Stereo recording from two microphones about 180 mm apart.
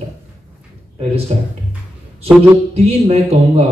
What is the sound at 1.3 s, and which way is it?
Speech, 35° right (ahead or behind).